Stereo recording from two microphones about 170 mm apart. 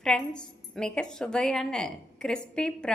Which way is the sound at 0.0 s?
5° left (ahead or behind).